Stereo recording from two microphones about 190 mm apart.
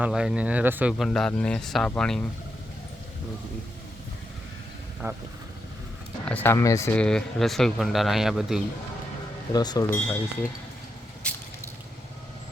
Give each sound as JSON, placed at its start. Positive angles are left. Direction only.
{"t": 0.0, "sound": "speech", "side_deg": -5}
{"t": 5.0, "sound": "speech", "side_deg": -15}
{"t": 6.2, "sound": "speech", "side_deg": 10}
{"t": 9.5, "sound": "speech", "side_deg": 20}
{"t": 11.2, "sound": "drip", "side_deg": 5}